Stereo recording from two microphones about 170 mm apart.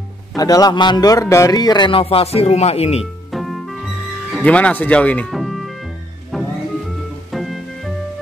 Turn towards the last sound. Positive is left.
turn(degrees=0)  # may be behind; listen again after turning